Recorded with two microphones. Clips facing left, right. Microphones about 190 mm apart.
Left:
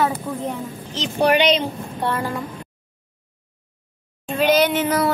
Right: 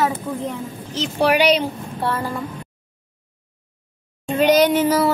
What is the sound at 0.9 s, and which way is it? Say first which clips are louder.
Speech: even; 10° right (ahead or behind).